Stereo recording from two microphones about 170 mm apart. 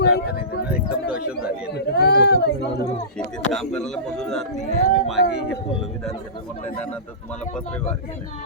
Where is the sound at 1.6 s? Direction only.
70° left (ahead or behind).